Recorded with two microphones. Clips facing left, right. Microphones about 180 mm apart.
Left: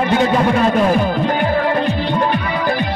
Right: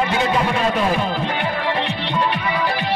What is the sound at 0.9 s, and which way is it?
Music, 45° left (ahead or behind).